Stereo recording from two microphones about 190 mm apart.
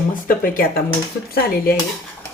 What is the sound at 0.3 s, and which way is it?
Speech, 50° left (ahead or behind).